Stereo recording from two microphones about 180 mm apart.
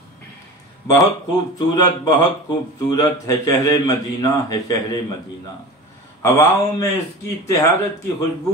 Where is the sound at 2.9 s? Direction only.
20° left (ahead or behind).